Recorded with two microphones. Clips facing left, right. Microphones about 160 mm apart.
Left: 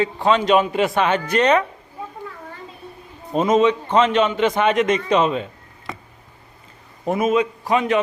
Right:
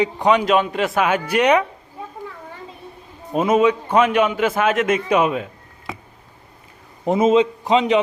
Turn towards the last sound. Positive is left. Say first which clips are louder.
# right 2 dB
turn(degrees=-20)  # may be behind; listen again after turning